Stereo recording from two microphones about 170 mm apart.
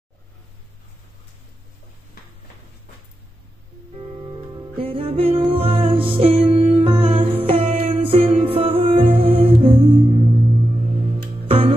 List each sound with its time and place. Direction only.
4.5 s music: 30° right (ahead or behind)